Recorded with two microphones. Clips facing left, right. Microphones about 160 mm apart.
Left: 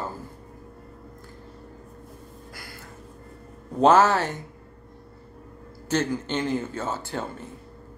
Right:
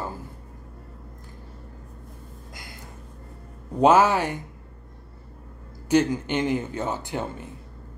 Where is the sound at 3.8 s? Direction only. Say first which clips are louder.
Even; 10° right (ahead or behind).